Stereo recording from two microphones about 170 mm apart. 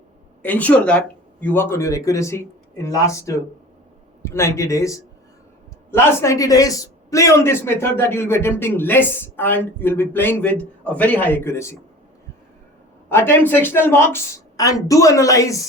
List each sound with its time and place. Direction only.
0.4 s a man's voice: 10° left (ahead or behind)
13.1 s a man's voice: 10° left (ahead or behind)